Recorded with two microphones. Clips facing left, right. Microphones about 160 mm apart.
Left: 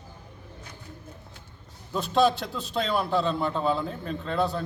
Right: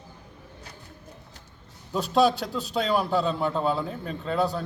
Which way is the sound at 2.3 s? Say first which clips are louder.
Right 3 dB; 40° right (ahead or behind).